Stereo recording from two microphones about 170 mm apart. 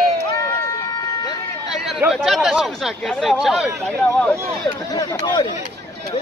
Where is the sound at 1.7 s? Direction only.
Centre (ahead or behind).